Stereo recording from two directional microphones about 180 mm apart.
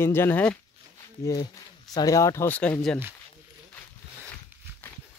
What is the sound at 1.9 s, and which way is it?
Speech, 20° left (ahead or behind).